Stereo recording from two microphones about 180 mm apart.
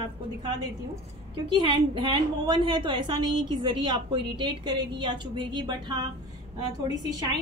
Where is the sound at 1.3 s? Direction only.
25° right (ahead or behind).